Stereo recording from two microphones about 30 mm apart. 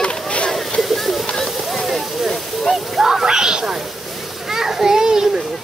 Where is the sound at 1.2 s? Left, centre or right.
Left.